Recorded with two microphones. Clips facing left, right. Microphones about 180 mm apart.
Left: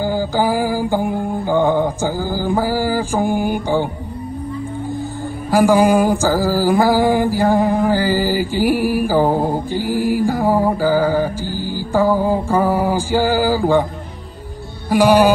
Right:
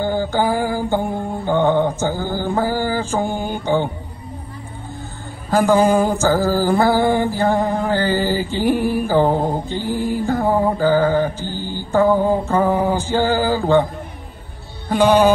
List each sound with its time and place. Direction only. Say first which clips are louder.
0.0 s mantra: left 1 dB; 10° left (ahead or behind)
5.5 s mantra: left 2 dB; 10° left (ahead or behind)
14.9 s mantra: left 1 dB; 10° left (ahead or behind)